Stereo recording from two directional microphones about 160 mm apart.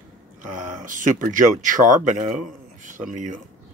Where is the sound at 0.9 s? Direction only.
55° right (ahead or behind).